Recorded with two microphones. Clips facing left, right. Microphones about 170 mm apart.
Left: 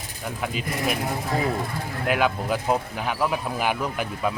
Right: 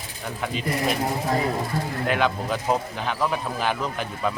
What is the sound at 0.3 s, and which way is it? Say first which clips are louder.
Speech: right 2 dB; 5° left (ahead or behind).